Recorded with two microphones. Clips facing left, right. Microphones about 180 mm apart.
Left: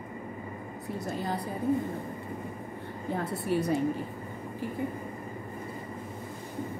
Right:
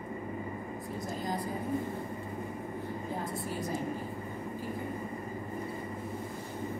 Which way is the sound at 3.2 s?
70° left (ahead or behind).